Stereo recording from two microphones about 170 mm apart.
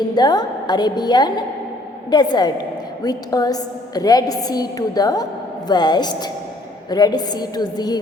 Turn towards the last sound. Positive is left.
turn(degrees=25)  # may be behind; listen again after turning